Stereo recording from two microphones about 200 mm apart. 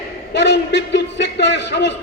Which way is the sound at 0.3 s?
60° left (ahead or behind).